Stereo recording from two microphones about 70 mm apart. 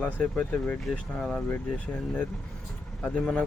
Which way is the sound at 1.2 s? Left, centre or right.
Centre.